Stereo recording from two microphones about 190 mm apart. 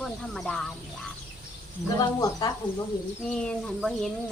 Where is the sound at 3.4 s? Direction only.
Centre (ahead or behind).